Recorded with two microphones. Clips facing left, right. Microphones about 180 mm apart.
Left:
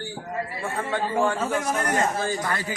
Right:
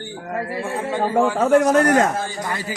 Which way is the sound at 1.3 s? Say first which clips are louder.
Right 11 dB; 80° right.